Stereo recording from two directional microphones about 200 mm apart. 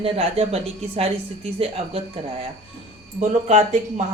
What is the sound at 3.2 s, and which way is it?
Speech, 35° right (ahead or behind).